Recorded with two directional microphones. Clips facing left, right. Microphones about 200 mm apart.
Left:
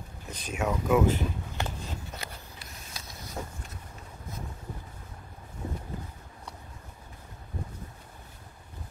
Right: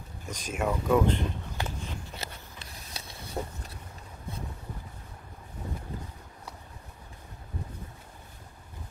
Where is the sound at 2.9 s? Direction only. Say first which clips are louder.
Right 4 dB; 30° right (ahead or behind).